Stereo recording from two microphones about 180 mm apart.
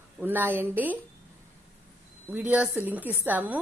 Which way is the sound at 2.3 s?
10° right (ahead or behind).